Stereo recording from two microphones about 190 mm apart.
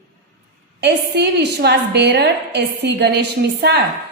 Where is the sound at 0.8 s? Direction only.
60° right (ahead or behind).